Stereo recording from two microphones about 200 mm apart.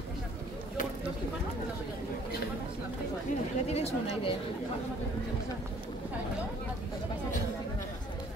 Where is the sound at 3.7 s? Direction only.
30° left (ahead or behind).